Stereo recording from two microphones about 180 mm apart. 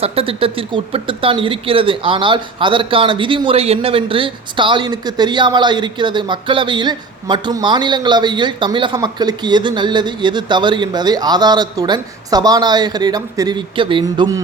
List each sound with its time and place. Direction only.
0.0 s speech: 30° right (ahead or behind)